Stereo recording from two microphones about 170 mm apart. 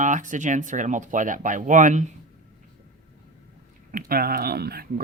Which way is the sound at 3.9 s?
60° right (ahead or behind).